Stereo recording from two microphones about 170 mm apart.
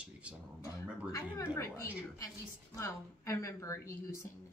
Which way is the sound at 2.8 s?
15° left (ahead or behind).